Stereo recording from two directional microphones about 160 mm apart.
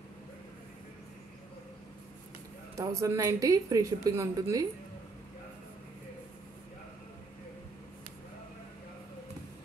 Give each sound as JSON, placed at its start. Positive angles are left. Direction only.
{"t": 2.8, "sound": "a woman's voice", "side_deg": -20}